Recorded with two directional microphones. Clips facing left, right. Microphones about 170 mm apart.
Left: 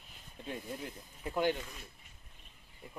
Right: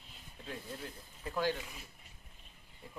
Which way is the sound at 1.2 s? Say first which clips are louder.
Left 3 dB; 20° left (ahead or behind).